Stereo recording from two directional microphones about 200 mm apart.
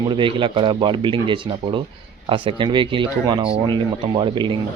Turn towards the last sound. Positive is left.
turn(degrees=-25)  # may be behind; listen again after turning